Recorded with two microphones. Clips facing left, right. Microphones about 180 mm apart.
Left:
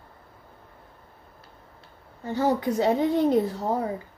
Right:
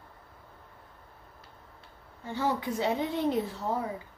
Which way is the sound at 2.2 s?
40° left (ahead or behind).